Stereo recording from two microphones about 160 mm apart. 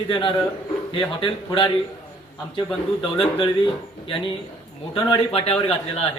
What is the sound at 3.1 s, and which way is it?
Speech, 30° left (ahead or behind).